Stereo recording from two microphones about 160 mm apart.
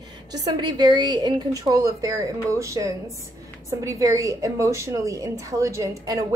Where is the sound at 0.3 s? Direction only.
25° right (ahead or behind).